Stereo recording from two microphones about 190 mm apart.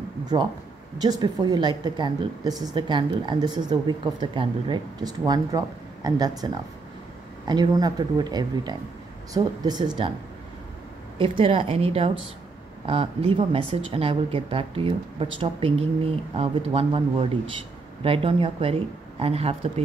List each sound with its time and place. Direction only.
0.2 s a woman's voice: 20° right (ahead or behind)
11.1 s a woman's voice: 25° right (ahead or behind)